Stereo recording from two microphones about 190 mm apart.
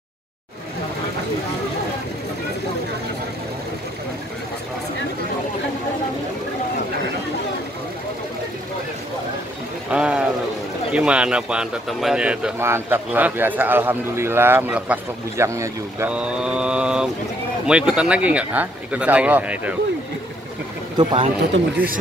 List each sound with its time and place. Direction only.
9.8 s a sound: 5° right (ahead or behind)
10.9 s speech: 5° right (ahead or behind)
21.0 s speech: 30° right (ahead or behind)